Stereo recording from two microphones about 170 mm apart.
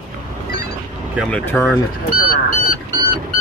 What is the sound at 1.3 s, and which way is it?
Speech, 10° left (ahead or behind).